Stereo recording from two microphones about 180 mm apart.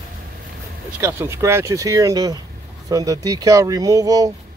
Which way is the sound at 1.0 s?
15° right (ahead or behind).